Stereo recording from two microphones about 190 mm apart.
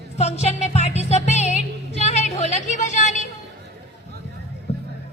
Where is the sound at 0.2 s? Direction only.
35° left (ahead or behind).